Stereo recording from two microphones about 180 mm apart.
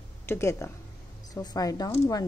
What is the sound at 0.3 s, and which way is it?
A woman's voice, 15° left (ahead or behind).